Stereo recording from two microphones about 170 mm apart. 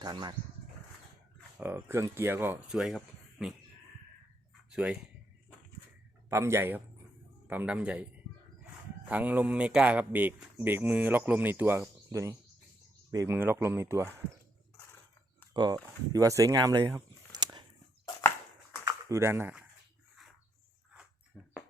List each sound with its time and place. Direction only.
0.0 s speech: 25° right (ahead or behind)
1.5 s speech: 15° right (ahead or behind)
4.7 s speech: 5° right (ahead or behind)
6.3 s a man's voice: 15° right (ahead or behind)
9.0 s speech: 10° right (ahead or behind)
15.5 s speech: 25° right (ahead or behind)
17.4 s a sound: 25° right (ahead or behind)
18.9 s speech: 20° right (ahead or behind)